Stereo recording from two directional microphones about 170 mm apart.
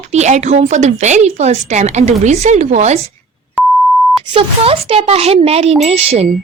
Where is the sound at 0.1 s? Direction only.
40° right (ahead or behind).